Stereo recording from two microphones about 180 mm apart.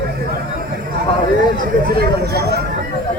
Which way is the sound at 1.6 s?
60° right (ahead or behind).